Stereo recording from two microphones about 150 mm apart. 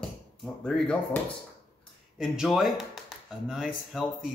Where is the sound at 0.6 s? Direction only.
5° left (ahead or behind).